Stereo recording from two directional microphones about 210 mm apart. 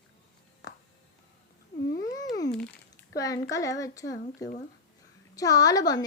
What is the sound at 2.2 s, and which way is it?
Babbling, 15° left (ahead or behind).